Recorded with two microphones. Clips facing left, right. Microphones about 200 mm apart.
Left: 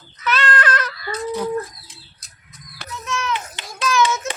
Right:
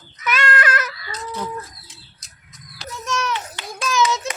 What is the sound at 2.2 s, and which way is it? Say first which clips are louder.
Bird: left 1 dB; 60° left (ahead or behind).